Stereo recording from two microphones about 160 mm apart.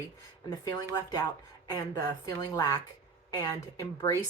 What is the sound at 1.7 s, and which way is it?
Speech, 20° left (ahead or behind).